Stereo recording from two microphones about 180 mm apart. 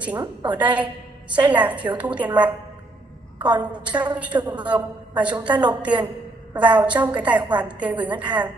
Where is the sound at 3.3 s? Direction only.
25° right (ahead or behind).